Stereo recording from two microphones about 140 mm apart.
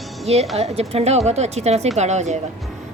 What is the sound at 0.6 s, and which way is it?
A woman's voice, 50° right (ahead or behind).